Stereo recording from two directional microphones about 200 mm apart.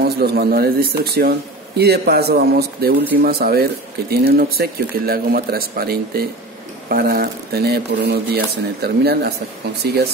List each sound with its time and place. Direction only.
0.0 s speech: 50° right (ahead or behind)